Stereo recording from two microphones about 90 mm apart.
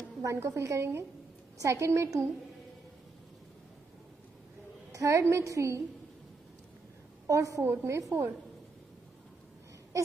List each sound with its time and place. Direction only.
0.2 s a woman's voice: 35° right (ahead or behind)
4.9 s a woman's voice: 35° right (ahead or behind)
7.2 s a woman's voice: 40° right (ahead or behind)
7.6 s a woman's voice: 30° right (ahead or behind)